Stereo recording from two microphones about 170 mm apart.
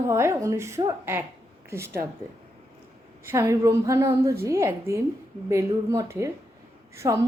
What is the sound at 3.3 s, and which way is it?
A woman's voice, 15° right (ahead or behind).